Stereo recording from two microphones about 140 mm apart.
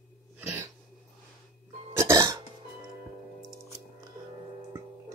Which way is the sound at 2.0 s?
20° right (ahead or behind).